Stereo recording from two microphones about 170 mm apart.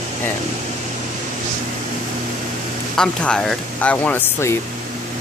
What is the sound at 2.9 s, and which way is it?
Speech, 5° left (ahead or behind).